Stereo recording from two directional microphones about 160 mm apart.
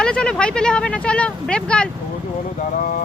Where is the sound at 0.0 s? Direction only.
5° left (ahead or behind).